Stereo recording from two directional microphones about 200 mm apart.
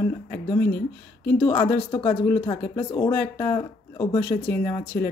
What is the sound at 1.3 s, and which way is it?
Speech, 10° left (ahead or behind).